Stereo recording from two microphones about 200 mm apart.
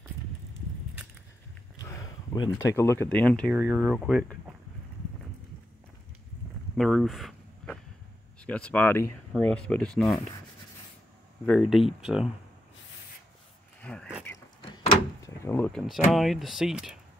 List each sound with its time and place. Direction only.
1.8 s speech: 15° left (ahead or behind)
3.5 s speech: 5° right (ahead or behind)
6.8 s a sound: centre (ahead or behind)
8.5 s speech: 5° left (ahead or behind)
11.4 s speech: centre (ahead or behind)
13.7 s a sound: 5° left (ahead or behind)
14.6 s door: 25° left (ahead or behind)
15.4 s speech: 10° left (ahead or behind)